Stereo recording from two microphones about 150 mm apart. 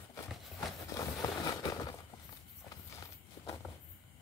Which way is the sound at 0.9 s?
25° left (ahead or behind).